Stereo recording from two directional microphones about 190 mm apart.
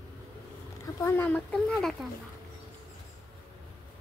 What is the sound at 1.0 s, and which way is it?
Speech, 10° left (ahead or behind).